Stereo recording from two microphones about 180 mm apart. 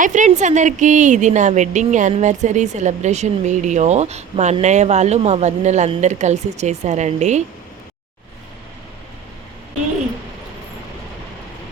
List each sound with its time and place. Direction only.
0.0 s a woman's voice: 45° right (ahead or behind)